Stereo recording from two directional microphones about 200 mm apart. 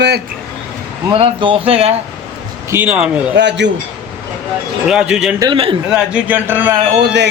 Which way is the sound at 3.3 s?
60° right (ahead or behind).